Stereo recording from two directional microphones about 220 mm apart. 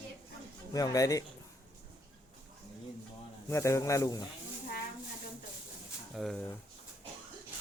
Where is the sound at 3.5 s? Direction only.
15° left (ahead or behind).